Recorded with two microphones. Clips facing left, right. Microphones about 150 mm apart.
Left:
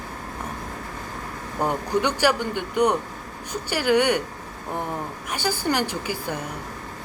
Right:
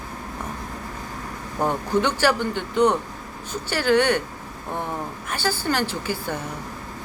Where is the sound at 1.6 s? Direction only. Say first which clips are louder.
Right 1 dB; 15° left (ahead or behind).